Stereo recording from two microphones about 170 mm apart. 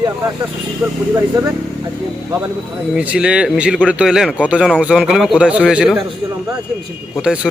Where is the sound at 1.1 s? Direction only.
15° right (ahead or behind).